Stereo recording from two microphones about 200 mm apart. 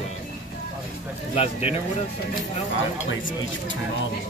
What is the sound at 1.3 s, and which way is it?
Speech, 30° left (ahead or behind).